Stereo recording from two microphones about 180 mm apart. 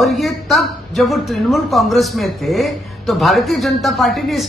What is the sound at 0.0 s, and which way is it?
A man's voice, centre (ahead or behind).